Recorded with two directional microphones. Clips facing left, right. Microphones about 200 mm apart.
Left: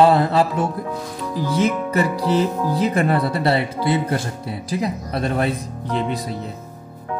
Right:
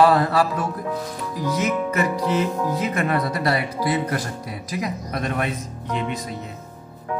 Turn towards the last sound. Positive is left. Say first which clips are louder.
# left 3 dB
turn(degrees=35)  # may be behind; listen again after turning